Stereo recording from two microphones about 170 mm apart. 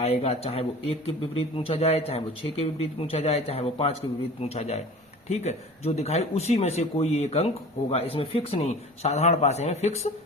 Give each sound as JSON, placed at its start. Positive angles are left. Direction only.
{"t": 0.0, "sound": "speech", "side_deg": 40}